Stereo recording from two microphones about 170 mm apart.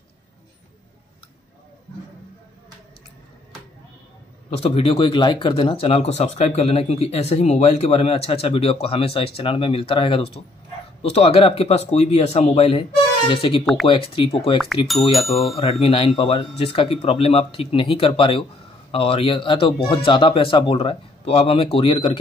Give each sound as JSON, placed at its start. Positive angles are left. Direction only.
{"t": 4.5, "sound": "speech", "side_deg": 35}
{"t": 14.9, "sound": "speech", "side_deg": 0}
{"t": 15.5, "sound": "speech", "side_deg": 35}